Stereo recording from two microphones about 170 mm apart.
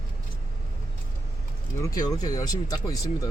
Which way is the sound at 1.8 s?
20° left (ahead or behind).